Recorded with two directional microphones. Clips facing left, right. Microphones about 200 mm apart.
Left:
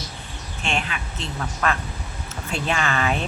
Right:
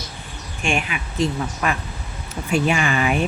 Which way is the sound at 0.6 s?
15° right (ahead or behind).